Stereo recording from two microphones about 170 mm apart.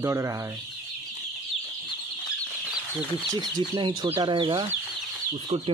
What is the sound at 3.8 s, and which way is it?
Speech, 30° right (ahead or behind).